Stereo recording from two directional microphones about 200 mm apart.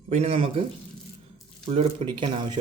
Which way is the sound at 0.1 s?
30° right (ahead or behind).